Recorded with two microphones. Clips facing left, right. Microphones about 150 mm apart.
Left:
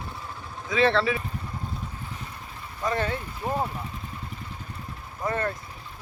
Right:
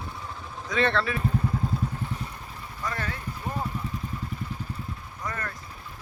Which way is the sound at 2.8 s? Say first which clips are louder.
Left 6 dB; 25° left (ahead or behind).